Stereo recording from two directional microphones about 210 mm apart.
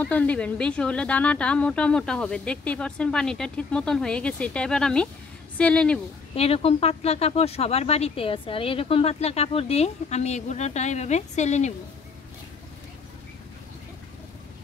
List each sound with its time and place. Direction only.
0.0 s speech: 5° left (ahead or behind)
6.3 s speech: 30° left (ahead or behind)